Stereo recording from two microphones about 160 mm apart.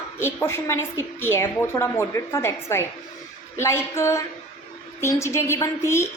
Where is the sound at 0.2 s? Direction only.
15° left (ahead or behind).